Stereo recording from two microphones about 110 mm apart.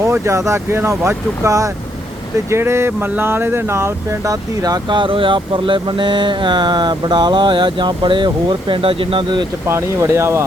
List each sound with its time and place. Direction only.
0.0 s speech: 25° right (ahead or behind); by 9.5 s 45° right (ahead or behind)
9.6 s speech: 25° right (ahead or behind)